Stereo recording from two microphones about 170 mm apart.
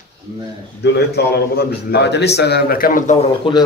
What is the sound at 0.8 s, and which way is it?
A man's voice, 75° left (ahead or behind).